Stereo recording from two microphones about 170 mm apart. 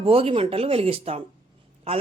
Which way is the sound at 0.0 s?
35° right (ahead or behind).